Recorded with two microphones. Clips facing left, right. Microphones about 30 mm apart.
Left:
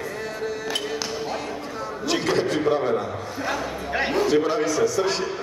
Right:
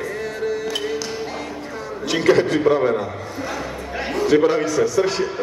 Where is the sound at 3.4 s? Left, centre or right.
Centre.